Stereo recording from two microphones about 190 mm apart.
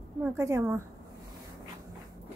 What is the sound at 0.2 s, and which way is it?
Speech, 15° right (ahead or behind).